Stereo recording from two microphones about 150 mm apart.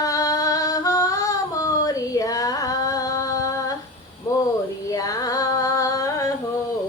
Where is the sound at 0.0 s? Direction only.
25° left (ahead or behind).